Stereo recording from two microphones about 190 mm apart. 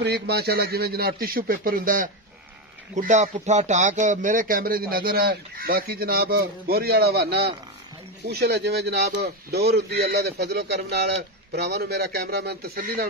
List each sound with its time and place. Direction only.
0.0 s a man's voice: 55° right (ahead or behind)